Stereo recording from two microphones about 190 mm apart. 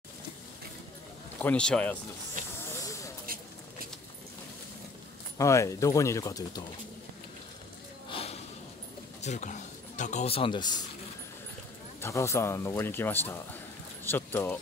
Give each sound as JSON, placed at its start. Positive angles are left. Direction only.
{"t": 1.4, "sound": "a man's voice", "side_deg": 5}
{"t": 2.4, "sound": "hiss", "side_deg": -45}
{"t": 2.8, "sound": "spray", "side_deg": 15}
{"t": 3.3, "sound": "a sound", "side_deg": -50}
{"t": 5.4, "sound": "a man's voice", "side_deg": 15}
{"t": 8.1, "sound": "a sound", "side_deg": 30}
{"t": 9.2, "sound": "speech", "side_deg": 40}
{"t": 12.0, "sound": "a man's voice", "side_deg": 15}